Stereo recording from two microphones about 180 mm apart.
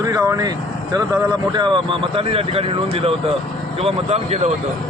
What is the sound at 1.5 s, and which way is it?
Speech, 25° right (ahead or behind).